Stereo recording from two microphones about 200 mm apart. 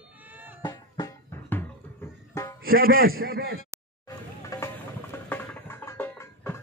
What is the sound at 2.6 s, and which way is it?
Speech, 45° right (ahead or behind).